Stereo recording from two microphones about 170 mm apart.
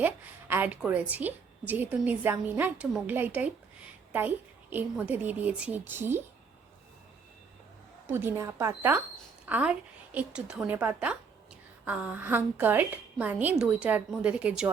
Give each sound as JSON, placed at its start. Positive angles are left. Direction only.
{"t": 0.0, "sound": "a woman's voice", "side_deg": -10}
{"t": 8.0, "sound": "a woman's voice", "side_deg": -15}